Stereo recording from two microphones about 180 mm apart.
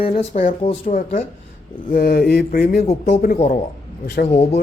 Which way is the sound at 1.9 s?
60° left (ahead or behind).